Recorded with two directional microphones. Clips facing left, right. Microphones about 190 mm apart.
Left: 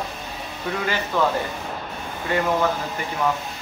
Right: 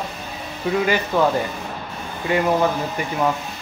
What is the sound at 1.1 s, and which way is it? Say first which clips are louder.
Speech: right 3 dB; 15° right (ahead or behind).